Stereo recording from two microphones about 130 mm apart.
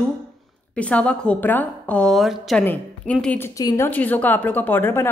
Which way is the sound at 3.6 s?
25° left (ahead or behind).